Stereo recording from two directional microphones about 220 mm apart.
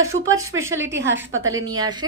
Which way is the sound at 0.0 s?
15° right (ahead or behind).